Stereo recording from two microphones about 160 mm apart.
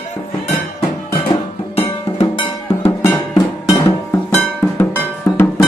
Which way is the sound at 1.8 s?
40° left (ahead or behind).